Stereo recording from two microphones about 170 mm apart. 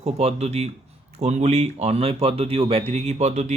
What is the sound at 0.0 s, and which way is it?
Speech, 35° right (ahead or behind).